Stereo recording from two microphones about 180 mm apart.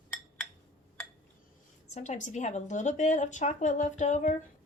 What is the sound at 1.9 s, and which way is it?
A woman's voice, 40° left (ahead or behind).